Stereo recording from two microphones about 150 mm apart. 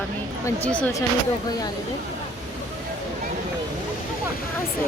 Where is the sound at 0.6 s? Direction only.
10° left (ahead or behind).